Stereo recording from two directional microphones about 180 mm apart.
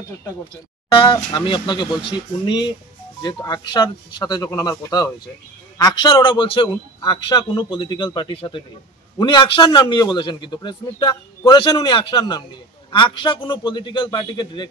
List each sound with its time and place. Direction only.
0.9 s a man's voice: 25° left (ahead or behind)